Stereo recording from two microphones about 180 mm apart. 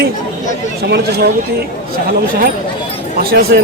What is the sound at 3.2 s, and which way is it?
Speech, 55° right (ahead or behind).